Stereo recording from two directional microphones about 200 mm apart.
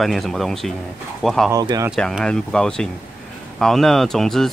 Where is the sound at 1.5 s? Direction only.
20° right (ahead or behind).